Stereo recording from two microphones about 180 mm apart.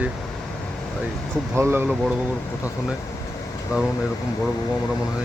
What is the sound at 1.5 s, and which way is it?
Speech, 15° right (ahead or behind).